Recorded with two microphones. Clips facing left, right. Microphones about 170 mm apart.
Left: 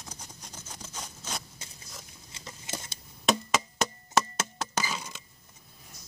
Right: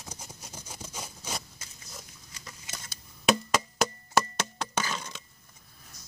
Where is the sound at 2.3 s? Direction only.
25° left (ahead or behind).